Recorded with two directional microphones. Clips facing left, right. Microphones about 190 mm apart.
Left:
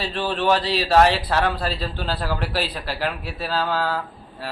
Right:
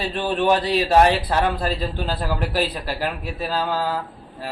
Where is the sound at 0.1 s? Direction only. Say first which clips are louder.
Right 2 dB; 15° right (ahead or behind).